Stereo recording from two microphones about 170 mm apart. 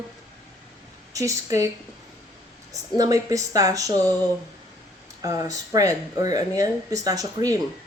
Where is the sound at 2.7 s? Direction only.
20° right (ahead or behind).